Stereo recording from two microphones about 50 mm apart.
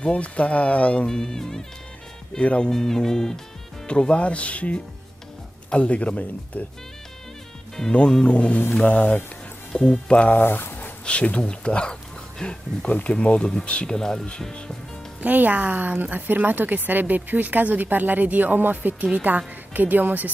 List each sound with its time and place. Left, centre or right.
0.0 s speech: left
1.0 s speech: centre
2.4 s speech: left
2.7 s speech: centre; by 6.6 s left
7.9 s speech: centre
9.7 s speech: centre
10.3 s speech: left
11.1 s speech: left
15.2 s a woman's voice: right